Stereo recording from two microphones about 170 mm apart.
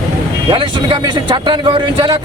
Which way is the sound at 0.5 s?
30° right (ahead or behind).